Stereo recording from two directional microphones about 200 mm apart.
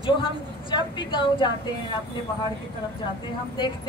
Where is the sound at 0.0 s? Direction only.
25° left (ahead or behind).